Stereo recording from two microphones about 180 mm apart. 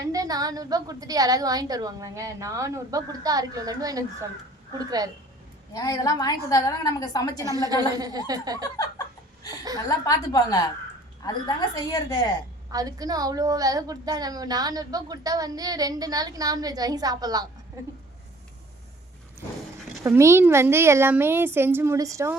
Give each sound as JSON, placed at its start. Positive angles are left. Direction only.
{"t": 0.0, "sound": "a woman's voice", "side_deg": -20}
{"t": 5.7, "sound": "a woman's voice", "side_deg": 20}
{"t": 7.5, "sound": "a woman's voice", "side_deg": -20}
{"t": 8.8, "sound": "laughter", "side_deg": 20}
{"t": 9.7, "sound": "a woman's voice", "side_deg": 20}
{"t": 12.7, "sound": "a woman's voice", "side_deg": -20}
{"t": 20.1, "sound": "a woman's voice", "side_deg": -15}